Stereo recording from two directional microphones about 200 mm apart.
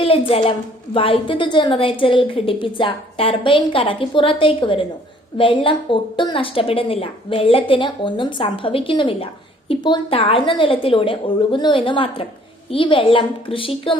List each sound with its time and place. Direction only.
0.0 s a woman's voice: 25° left (ahead or behind)